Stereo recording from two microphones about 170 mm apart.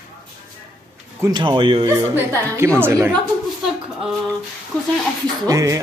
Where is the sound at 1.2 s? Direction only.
25° right (ahead or behind).